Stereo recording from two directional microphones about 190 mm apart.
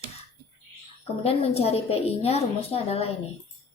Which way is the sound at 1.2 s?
30° left (ahead or behind).